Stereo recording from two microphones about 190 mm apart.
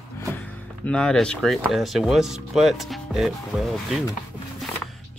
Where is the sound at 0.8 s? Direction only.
5° left (ahead or behind).